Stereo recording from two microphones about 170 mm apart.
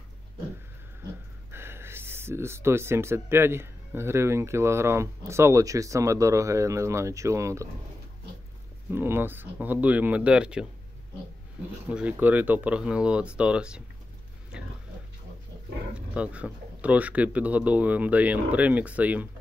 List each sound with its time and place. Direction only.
1.5 s speech: 15° right (ahead or behind)
8.9 s speech: 15° right (ahead or behind)
11.9 s speech: 10° right (ahead or behind)
16.2 s speech: 5° right (ahead or behind)